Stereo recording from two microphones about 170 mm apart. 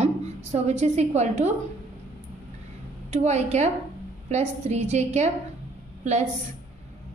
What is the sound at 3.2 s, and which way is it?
A woman's voice, 40° right (ahead or behind).